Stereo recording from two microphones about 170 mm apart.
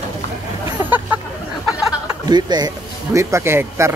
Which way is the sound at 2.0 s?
25° right (ahead or behind).